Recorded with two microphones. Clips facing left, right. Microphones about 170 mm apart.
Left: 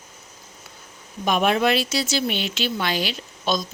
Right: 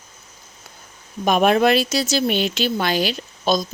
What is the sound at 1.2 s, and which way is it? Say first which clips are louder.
Speech: right 4 dB; 45° right (ahead or behind).